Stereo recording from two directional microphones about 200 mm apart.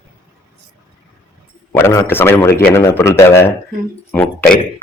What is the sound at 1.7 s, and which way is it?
A man's voice, 15° left (ahead or behind).